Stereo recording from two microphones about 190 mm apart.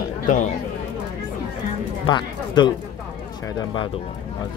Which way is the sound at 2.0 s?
25° left (ahead or behind).